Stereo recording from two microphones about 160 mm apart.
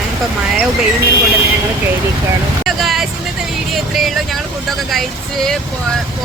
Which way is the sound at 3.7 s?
Centre (ahead or behind).